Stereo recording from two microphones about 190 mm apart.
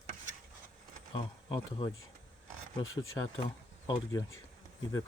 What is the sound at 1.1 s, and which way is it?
Speech, 25° left (ahead or behind).